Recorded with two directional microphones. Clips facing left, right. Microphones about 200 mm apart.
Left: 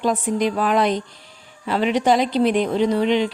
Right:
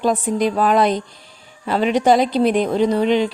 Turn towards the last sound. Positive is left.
turn(degrees=-40)  # may be behind; listen again after turning